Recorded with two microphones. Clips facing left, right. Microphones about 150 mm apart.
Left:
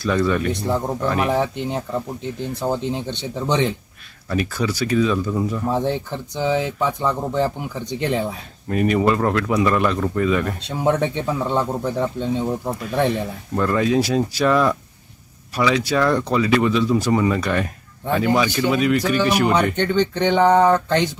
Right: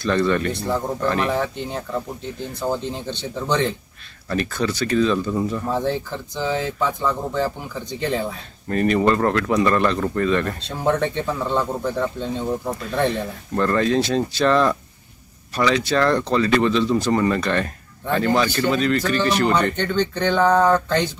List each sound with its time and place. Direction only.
0.0 s speech: 5° left (ahead or behind)
0.5 s speech: 15° left (ahead or behind)
5.7 s speech: 15° left (ahead or behind)
13.6 s speech: 5° left (ahead or behind)